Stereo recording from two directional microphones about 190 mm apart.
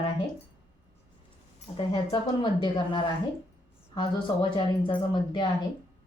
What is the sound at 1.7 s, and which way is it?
A woman's voice, 30° left (ahead or behind).